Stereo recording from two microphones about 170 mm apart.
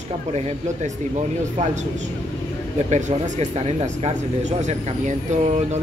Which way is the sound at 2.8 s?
45° right (ahead or behind).